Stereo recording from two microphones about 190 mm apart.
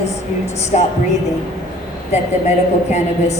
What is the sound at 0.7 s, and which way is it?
Speech, 40° left (ahead or behind).